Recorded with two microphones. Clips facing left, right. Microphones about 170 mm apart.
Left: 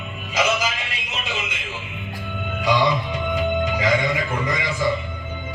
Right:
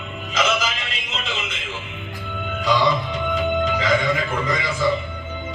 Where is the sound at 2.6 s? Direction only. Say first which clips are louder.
Even; 15° left (ahead or behind).